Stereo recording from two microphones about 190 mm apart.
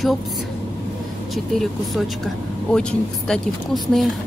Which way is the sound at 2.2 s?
5° left (ahead or behind).